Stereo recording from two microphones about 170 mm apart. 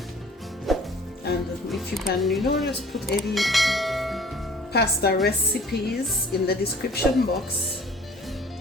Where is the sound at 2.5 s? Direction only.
Centre (ahead or behind).